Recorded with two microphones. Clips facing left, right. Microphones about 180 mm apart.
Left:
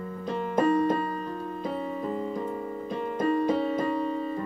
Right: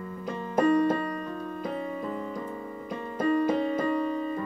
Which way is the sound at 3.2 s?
30° left (ahead or behind).